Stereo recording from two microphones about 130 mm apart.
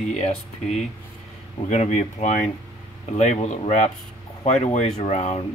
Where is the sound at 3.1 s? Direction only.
65° left (ahead or behind).